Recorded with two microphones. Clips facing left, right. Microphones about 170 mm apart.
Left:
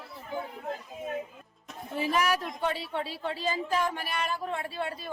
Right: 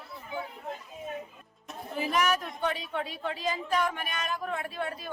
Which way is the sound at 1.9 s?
30° left (ahead or behind).